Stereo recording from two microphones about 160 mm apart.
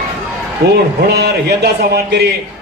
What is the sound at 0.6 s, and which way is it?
A man's voice, 80° right.